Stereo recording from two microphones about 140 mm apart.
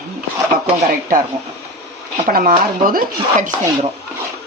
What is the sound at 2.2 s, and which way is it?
Speech, 80° right.